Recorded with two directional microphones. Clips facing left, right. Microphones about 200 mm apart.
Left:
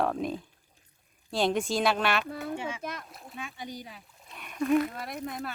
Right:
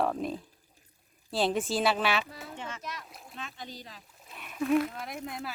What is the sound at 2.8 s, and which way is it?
Speech, 55° left (ahead or behind).